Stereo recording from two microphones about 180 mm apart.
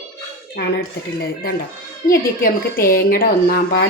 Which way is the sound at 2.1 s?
55° left (ahead or behind).